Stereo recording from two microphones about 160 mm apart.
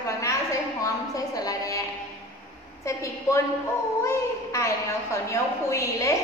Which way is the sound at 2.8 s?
20° left (ahead or behind).